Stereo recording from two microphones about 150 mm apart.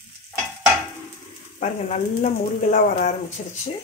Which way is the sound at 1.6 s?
50° left (ahead or behind).